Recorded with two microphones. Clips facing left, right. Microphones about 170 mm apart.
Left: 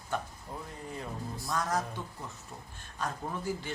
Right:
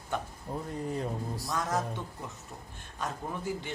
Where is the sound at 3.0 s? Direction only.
20° right (ahead or behind).